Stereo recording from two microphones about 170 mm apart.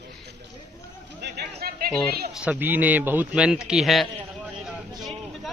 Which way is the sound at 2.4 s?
10° right (ahead or behind).